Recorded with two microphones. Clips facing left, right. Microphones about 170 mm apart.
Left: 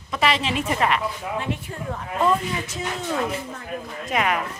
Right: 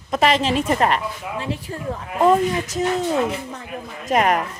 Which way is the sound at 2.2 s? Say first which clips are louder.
Right 6 dB; 40° right (ahead or behind).